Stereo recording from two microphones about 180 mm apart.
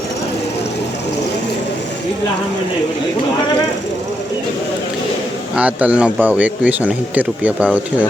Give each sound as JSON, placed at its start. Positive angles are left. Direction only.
{"t": 5.5, "sound": "speech", "side_deg": -5}